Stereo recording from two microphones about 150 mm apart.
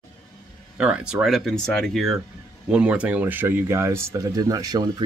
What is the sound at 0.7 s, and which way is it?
Speech, 5° right (ahead or behind).